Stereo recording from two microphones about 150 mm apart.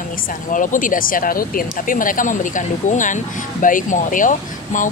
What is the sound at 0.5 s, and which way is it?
Speech, 60° left (ahead or behind).